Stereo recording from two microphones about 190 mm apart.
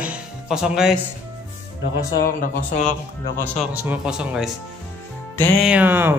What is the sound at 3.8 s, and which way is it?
Speech, 5° right (ahead or behind).